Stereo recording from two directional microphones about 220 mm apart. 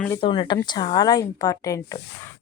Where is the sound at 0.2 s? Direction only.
25° left (ahead or behind).